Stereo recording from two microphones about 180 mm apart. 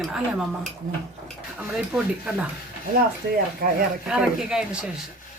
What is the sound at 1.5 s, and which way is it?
Speech, 5° right (ahead or behind).